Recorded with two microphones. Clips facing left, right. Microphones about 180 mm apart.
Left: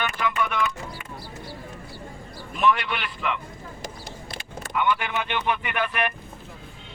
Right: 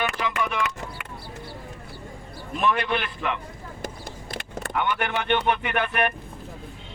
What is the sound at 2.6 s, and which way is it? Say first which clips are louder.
Speech: left 1 dB; 50° right (ahead or behind).